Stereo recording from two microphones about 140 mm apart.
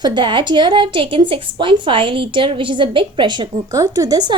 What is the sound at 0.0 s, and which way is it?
A woman's voice, 35° right (ahead or behind).